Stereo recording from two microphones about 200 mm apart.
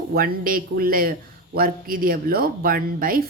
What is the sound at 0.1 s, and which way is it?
A woman's voice, 45° right (ahead or behind).